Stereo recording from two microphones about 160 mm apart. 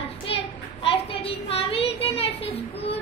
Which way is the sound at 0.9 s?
35° left (ahead or behind).